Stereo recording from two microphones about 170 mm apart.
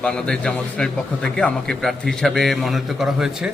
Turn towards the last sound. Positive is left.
turn(degrees=-5)  # may be behind; listen again after turning